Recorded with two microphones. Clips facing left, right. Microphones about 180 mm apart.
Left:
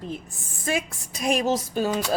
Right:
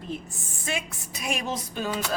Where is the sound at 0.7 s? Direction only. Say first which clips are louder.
Left 5 dB; 45° left (ahead or behind).